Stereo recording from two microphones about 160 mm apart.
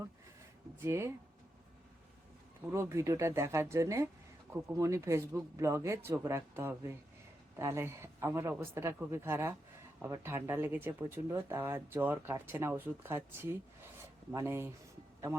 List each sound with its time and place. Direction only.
0.8 s speech: 15° right (ahead or behind)
2.6 s speech: 15° right (ahead or behind)